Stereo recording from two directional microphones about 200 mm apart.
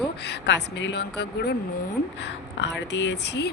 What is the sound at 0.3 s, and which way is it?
Speech, 60° left (ahead or behind).